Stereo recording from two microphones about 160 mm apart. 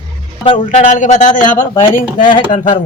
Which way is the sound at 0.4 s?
30° left (ahead or behind).